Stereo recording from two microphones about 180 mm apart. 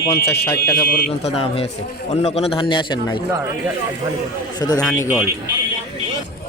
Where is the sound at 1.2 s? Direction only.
35° left (ahead or behind).